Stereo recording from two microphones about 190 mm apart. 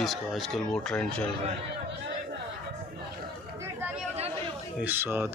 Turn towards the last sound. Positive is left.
turn(degrees=-10)  # may be behind; listen again after turning